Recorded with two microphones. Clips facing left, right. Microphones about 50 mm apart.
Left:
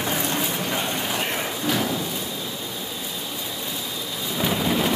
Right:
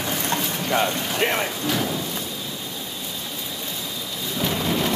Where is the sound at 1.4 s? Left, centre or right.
Centre.